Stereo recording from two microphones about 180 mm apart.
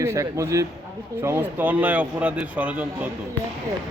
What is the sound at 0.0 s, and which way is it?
Speech, 15° right (ahead or behind).